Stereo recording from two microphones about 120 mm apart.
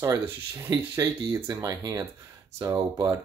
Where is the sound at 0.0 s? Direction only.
25° right (ahead or behind).